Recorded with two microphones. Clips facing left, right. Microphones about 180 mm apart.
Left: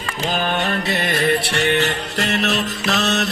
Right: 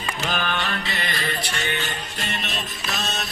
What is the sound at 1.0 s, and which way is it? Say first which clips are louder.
Music: left 9 dB; 60° left (ahead or behind).